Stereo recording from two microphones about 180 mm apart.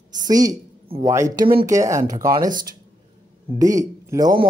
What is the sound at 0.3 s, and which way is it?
Speech, 20° right (ahead or behind).